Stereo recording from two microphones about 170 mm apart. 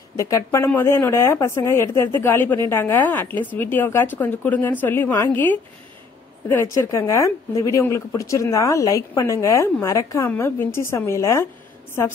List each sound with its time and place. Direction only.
0.1 s speech: 20° left (ahead or behind)